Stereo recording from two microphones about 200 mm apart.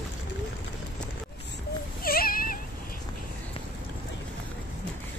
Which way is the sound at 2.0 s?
45° left (ahead or behind).